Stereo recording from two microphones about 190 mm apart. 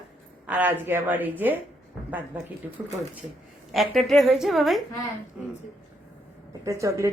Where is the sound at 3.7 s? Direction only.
Centre (ahead or behind).